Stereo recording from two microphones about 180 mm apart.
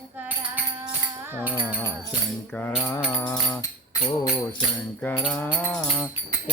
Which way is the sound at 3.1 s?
20° left (ahead or behind).